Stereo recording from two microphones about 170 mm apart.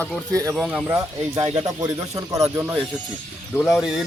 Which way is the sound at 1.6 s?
25° right (ahead or behind).